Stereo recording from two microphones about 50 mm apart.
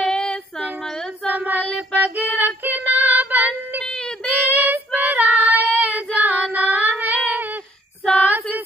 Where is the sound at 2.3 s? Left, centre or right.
Right.